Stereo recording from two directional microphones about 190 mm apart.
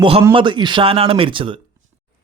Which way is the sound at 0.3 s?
25° right (ahead or behind).